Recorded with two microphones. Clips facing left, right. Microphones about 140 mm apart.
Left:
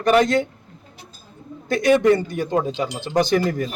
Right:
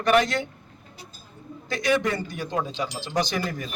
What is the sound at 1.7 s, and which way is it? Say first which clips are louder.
A man's voice: left 8 dB; 55° left (ahead or behind).